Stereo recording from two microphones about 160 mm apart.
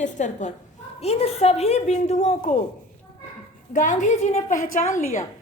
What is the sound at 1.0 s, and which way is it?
Speech, 40° left (ahead or behind).